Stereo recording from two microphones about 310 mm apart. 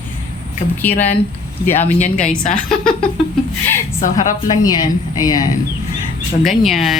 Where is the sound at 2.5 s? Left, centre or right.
Centre.